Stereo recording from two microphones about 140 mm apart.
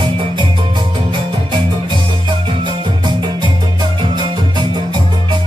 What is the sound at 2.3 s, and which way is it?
Music, 35° right (ahead or behind).